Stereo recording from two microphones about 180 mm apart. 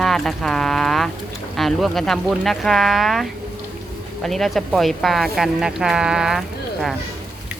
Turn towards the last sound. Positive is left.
turn(degrees=0)  # may be behind; listen again after turning